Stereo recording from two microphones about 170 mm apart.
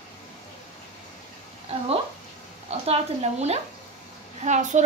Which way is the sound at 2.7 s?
35° right (ahead or behind).